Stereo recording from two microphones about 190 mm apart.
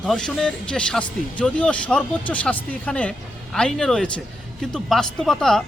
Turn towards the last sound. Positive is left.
turn(degrees=5)  # may be behind; listen again after turning